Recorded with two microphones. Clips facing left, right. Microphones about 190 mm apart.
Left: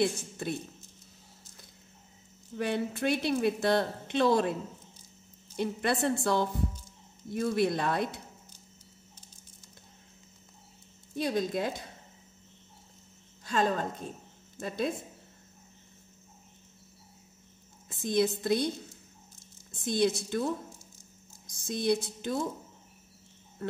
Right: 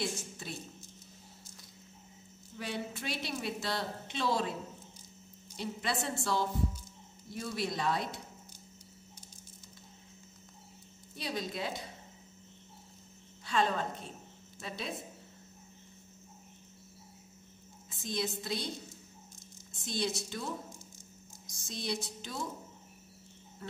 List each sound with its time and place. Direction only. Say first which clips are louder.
0.0 s a woman's voice: left 9 dB; 55° left (ahead or behind)
2.5 s a woman's voice: left 8 dB; 55° left (ahead or behind)
5.6 s a woman's voice: left 7 dB; 55° left (ahead or behind)
11.1 s a woman's voice: left 8 dB; 50° left (ahead or behind)
13.5 s a woman's voice: left 3 dB; 45° left (ahead or behind)
17.8 s a sound: left 9 dB; 55° left (ahead or behind)
18.4 s a woman's voice: left 10 dB; 55° left (ahead or behind)
19.7 s a woman's voice: left 8 dB; 55° left (ahead or behind)
21.6 s a woman's voice: left 9 dB; 55° left (ahead or behind)